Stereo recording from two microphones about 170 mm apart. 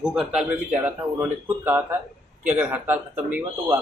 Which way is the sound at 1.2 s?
15° right (ahead or behind).